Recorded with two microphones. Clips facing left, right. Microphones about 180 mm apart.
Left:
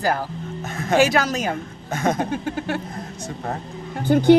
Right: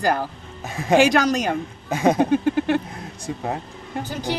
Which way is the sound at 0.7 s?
15° right (ahead or behind).